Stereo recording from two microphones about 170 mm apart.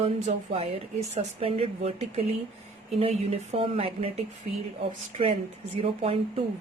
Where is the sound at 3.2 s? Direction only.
35° right (ahead or behind).